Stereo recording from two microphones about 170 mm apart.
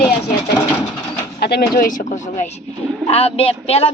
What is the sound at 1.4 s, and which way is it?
Speech, 65° left (ahead or behind).